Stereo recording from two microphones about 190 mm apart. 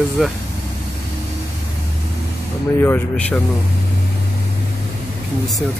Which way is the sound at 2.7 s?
10° left (ahead or behind).